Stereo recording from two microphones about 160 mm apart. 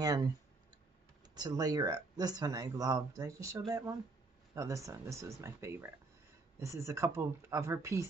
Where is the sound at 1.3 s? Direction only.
25° right (ahead or behind).